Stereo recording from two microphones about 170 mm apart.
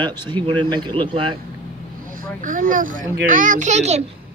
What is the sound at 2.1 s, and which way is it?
Speech, 50° right (ahead or behind).